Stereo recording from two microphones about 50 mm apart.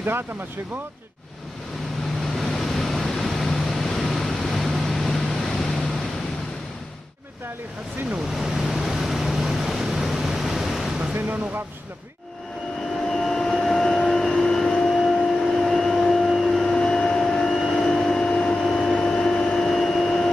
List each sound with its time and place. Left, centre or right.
2.2 s vehicle: centre
8.3 s waves: centre
11.1 s speech: right
13.0 s vehicle: centre
14.9 s a sound: centre
16.8 s vehicle: centre
17.6 s vehicle: centre
17.8 s vehicle: centre
18.6 s a sound: centre
18.9 s a sound: centre